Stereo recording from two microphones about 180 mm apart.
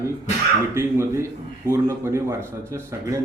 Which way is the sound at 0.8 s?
15° right (ahead or behind).